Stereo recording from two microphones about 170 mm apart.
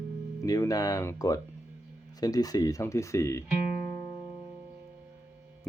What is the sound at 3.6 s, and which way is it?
Music, 60° right (ahead or behind).